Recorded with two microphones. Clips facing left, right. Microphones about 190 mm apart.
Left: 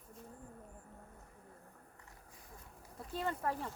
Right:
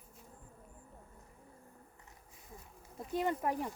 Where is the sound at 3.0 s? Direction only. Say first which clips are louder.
Right 5 dB; 15° right (ahead or behind).